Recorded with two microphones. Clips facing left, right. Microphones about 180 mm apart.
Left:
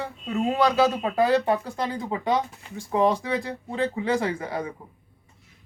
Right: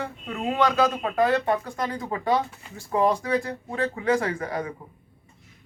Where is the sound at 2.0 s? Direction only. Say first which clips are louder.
Right 1 dB; 20° left (ahead or behind).